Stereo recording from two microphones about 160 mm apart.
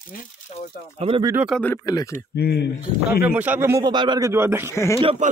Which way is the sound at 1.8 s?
20° left (ahead or behind).